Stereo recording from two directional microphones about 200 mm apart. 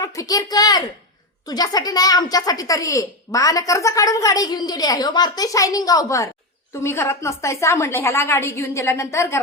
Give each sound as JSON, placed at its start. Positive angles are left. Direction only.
{"t": 0.0, "sound": "a woman's voice", "side_deg": 15}